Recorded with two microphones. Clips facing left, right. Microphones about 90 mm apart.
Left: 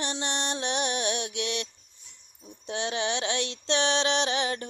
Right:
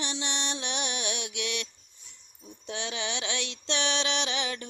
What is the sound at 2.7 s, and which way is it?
Female singing, 35° left (ahead or behind).